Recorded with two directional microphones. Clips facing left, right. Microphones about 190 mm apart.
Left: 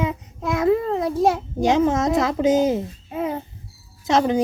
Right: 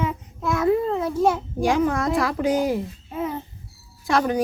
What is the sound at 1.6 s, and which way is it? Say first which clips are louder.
A woman's voice: left 3 dB; 25° left (ahead or behind).